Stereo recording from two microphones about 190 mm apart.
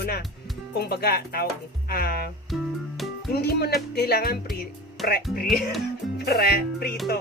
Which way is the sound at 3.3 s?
55° left (ahead or behind).